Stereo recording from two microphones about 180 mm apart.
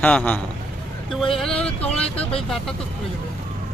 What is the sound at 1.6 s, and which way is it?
Speech, 35° left (ahead or behind).